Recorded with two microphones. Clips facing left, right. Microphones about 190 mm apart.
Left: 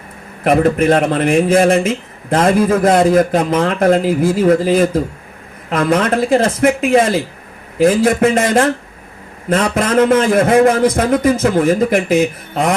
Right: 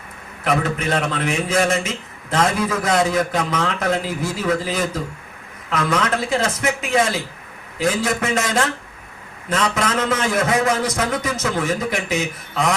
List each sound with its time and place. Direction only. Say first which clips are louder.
0.4 s a man's voice: left 9 dB; 55° left (ahead or behind)